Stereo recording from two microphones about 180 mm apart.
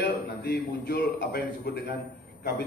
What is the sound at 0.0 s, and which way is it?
A man's voice, 65° left (ahead or behind).